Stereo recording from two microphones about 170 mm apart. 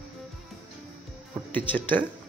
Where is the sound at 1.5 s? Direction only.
10° left (ahead or behind).